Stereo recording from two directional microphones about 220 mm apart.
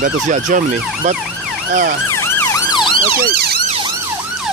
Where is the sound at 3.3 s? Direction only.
45° right (ahead or behind).